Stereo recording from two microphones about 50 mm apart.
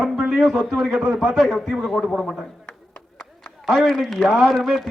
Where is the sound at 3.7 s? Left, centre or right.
Centre.